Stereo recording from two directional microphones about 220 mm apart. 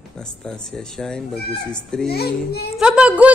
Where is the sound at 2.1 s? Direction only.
45° left (ahead or behind).